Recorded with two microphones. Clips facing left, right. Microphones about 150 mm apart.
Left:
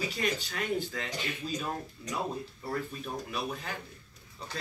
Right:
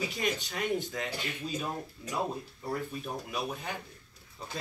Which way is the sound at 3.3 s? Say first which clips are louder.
Right 2 dB; 15° right (ahead or behind).